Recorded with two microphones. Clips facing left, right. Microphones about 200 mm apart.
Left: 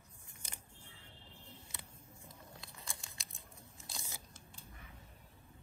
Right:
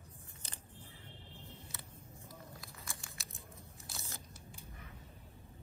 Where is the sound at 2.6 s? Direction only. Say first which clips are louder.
Right 1 dB; 20° left (ahead or behind).